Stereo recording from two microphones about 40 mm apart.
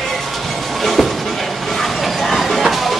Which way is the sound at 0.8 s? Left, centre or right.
Centre.